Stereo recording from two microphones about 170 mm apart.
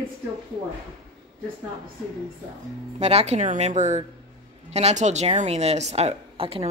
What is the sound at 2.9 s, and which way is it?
A woman's voice, 40° right (ahead or behind).